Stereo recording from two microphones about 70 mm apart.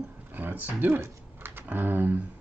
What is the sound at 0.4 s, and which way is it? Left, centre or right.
Speech, right.